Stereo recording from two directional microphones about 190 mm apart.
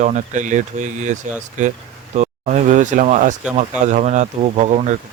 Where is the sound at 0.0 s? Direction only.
40° right (ahead or behind).